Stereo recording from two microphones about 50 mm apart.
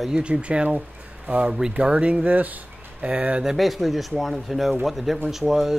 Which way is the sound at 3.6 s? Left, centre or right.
Centre.